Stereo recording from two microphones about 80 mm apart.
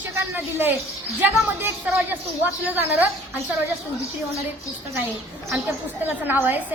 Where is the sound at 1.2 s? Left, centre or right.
Right.